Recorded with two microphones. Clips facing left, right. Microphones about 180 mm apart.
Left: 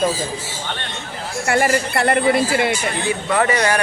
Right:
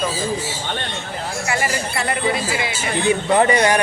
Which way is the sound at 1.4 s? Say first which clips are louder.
Left 7 dB; 55° left (ahead or behind).